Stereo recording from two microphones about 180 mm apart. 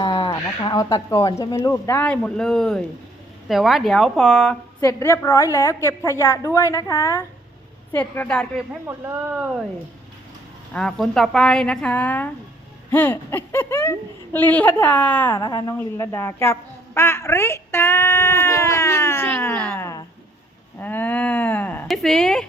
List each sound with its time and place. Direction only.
0.0 s a woman's voice: 25° left (ahead or behind); by 4.5 s 5° left (ahead or behind)
4.8 s speech: 15° left (ahead or behind)
8.9 s speech: 10° right (ahead or behind)
10.8 s a woman's voice: 5° left (ahead or behind)